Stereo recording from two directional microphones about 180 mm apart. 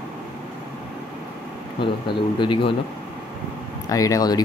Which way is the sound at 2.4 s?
30° left (ahead or behind).